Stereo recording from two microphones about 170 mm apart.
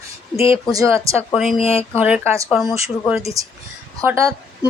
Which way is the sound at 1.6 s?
35° left (ahead or behind).